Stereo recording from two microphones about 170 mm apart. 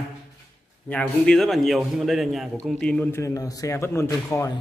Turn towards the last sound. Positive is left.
turn(degrees=20)  # may be behind; listen again after turning